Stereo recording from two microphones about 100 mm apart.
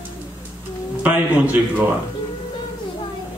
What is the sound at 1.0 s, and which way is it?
Speech, 20° right (ahead or behind).